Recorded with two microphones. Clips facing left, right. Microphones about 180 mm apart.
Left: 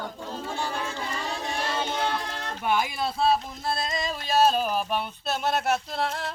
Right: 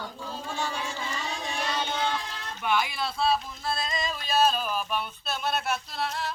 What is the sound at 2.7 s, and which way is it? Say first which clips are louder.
Speech: left 2 dB; 40° left (ahead or behind).